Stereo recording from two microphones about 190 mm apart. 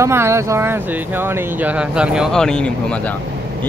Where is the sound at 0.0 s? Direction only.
15° right (ahead or behind).